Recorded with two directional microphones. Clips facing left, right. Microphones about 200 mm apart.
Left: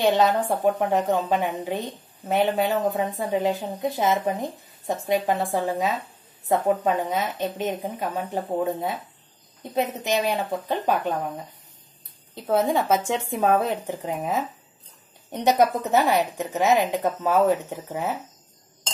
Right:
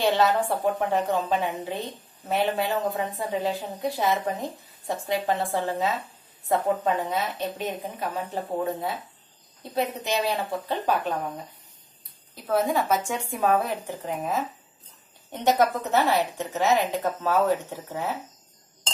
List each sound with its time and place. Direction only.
0.0 s a woman's voice: 20° left (ahead or behind)
12.4 s speech: 25° left (ahead or behind)
15.4 s a woman's voice: 15° left (ahead or behind)